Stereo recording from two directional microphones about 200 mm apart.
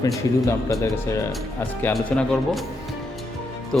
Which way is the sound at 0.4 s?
15° left (ahead or behind).